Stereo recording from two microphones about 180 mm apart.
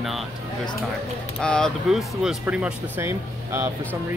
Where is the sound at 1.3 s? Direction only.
5° left (ahead or behind); by 3.7 s 15° right (ahead or behind).